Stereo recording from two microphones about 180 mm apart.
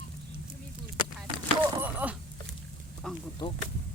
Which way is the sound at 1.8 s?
10° right (ahead or behind).